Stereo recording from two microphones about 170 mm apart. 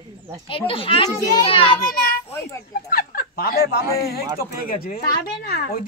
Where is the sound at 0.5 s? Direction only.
30° left (ahead or behind).